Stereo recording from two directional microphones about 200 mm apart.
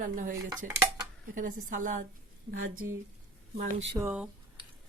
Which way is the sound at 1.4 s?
40° right (ahead or behind).